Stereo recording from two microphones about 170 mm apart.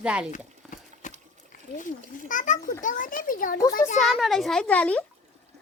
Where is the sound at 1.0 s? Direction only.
45° left (ahead or behind).